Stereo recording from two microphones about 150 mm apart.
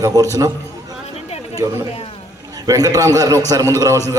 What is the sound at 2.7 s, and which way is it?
A man's voice, 25° right (ahead or behind).